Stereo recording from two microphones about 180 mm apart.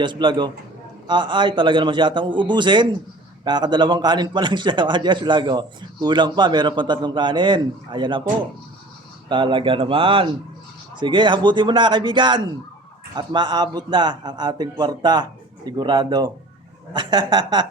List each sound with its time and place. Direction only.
0.0 s a man's voice: 25° right (ahead or behind)
9.3 s a man's voice: 25° right (ahead or behind)